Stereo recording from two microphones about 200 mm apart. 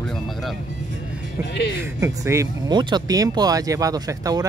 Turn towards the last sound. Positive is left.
turn(degrees=-20)  # may be behind; listen again after turning